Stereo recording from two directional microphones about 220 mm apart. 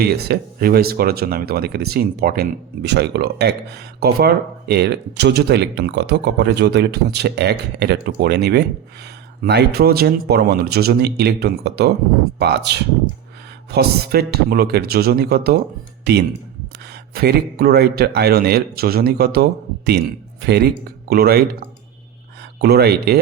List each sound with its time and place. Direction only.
0.0 s speech: 45° right (ahead or behind)
22.5 s speech: 50° right (ahead or behind)